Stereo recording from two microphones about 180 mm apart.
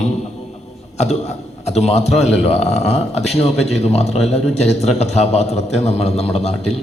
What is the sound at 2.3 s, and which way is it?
Speech, 35° left (ahead or behind).